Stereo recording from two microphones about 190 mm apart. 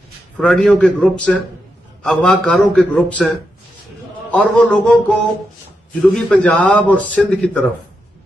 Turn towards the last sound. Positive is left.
turn(degrees=5)  # may be behind; listen again after turning